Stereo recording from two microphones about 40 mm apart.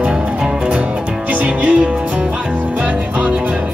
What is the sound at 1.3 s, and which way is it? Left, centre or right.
Music, right.